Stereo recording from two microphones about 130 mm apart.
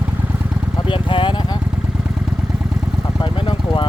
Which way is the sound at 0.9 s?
40° left (ahead or behind).